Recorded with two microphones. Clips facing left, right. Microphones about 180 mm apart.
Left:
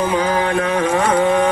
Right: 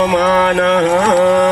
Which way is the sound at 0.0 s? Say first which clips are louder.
Right 5 dB; 75° right (ahead or behind).